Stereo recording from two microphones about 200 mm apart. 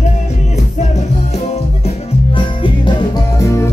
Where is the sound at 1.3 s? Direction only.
30° left (ahead or behind).